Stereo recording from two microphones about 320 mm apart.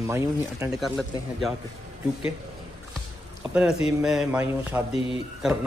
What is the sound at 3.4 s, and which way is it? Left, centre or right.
Speech, centre.